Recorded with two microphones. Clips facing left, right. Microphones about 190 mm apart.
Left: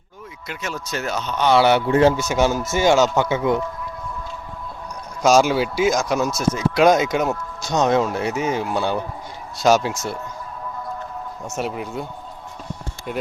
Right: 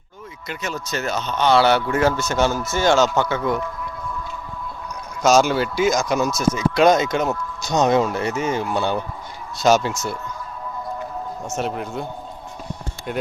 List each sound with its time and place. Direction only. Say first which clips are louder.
0.4 s speech: right 1 dB; 5° left (ahead or behind); by 3.6 s 20° left (ahead or behind)
5.2 s speech: left 1 dB; 5° left (ahead or behind)
11.5 s speech: even; 5° left (ahead or behind)